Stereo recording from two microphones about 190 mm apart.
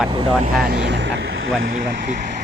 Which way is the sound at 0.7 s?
65° right (ahead or behind).